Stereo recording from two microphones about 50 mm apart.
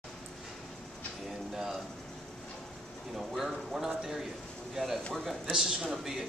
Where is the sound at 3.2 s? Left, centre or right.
Centre.